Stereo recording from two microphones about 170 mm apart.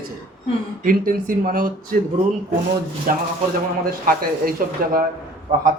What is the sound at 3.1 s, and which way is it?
A man's voice, 55° right (ahead or behind).